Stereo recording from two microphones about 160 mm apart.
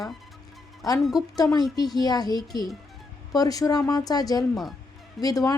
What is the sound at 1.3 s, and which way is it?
Speech, 25° left (ahead or behind).